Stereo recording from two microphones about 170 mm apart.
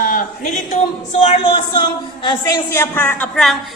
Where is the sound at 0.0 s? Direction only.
55° left (ahead or behind).